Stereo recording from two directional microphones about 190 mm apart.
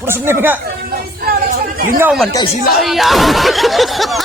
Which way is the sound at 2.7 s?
Centre (ahead or behind).